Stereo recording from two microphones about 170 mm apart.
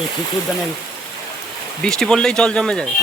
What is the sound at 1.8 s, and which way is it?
Speech, 5° left (ahead or behind).